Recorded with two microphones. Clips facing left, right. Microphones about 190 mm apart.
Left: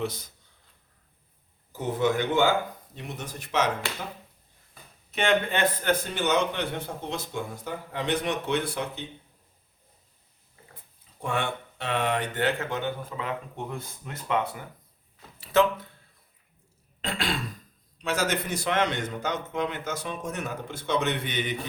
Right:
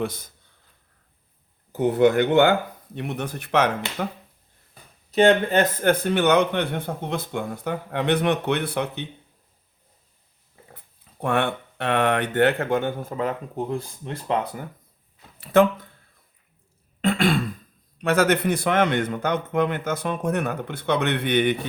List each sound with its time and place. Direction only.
0.0 s speech: 50° right (ahead or behind)
1.7 s a man's voice: 60° right (ahead or behind)
5.1 s a man's voice: 40° right (ahead or behind); by 9.0 s 60° right (ahead or behind)
11.2 s a man's voice: 60° right (ahead or behind); by 14.6 s 35° right (ahead or behind)
15.5 s speech: 55° right (ahead or behind)
17.0 s throat clearing: 55° right (ahead or behind)
17.9 s a man's voice: 60° right (ahead or behind)